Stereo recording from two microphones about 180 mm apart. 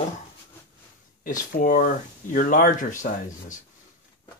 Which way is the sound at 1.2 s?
50° left (ahead or behind).